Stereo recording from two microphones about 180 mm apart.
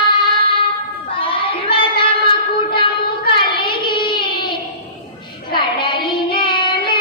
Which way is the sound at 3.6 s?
25° left (ahead or behind).